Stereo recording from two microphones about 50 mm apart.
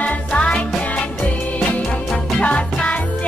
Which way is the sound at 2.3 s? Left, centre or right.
Left.